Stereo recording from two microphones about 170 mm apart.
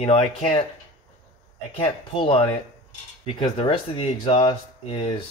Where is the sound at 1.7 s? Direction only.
35° left (ahead or behind).